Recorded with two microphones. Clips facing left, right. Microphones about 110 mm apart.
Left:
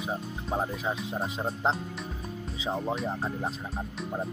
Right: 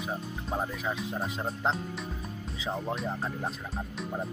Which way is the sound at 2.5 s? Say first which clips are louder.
Left 3 dB; 20° left (ahead or behind).